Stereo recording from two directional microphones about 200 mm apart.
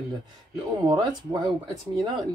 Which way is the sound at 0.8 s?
20° right (ahead or behind).